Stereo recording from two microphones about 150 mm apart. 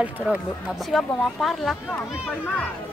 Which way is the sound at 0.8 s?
Centre (ahead or behind).